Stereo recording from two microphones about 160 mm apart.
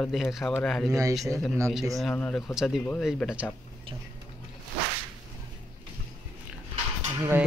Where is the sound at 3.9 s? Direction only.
35° right (ahead or behind).